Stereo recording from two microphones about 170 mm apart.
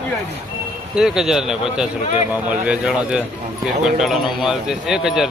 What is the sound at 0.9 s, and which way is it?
Speech, 5° right (ahead or behind).